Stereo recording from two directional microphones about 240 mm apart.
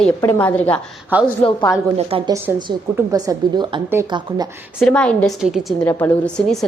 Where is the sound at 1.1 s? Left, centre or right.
Centre.